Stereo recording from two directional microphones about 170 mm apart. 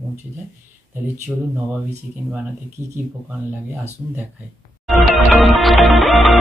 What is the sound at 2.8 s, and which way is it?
Speech, 15° left (ahead or behind).